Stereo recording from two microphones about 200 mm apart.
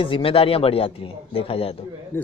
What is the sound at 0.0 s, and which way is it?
A man's voice, 25° left (ahead or behind).